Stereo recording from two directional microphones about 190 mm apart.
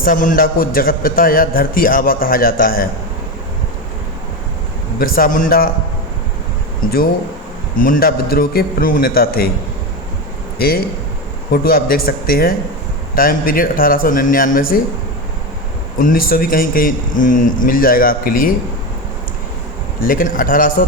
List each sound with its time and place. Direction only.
0.0 s a man's voice: 45° left (ahead or behind)
4.9 s a man's voice: 50° left (ahead or behind)
7.9 s a man's voice: 50° left (ahead or behind)
10.6 s a man's voice: 50° left (ahead or behind)
16.0 s a man's voice: 50° left (ahead or behind)
20.0 s a man's voice: 45° left (ahead or behind)